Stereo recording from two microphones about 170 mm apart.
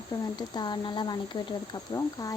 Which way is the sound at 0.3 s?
25° left (ahead or behind).